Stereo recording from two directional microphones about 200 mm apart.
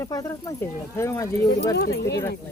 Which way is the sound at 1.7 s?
55° left (ahead or behind).